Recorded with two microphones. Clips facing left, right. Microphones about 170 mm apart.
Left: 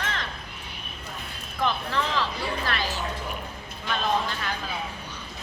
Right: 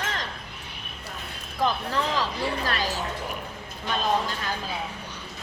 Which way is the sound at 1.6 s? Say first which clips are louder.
Right 1 dB; 40° right (ahead or behind).